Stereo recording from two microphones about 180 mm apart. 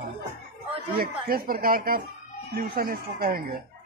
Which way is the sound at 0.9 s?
55° right (ahead or behind).